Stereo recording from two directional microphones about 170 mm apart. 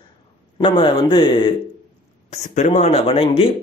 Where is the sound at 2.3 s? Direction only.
45° left (ahead or behind).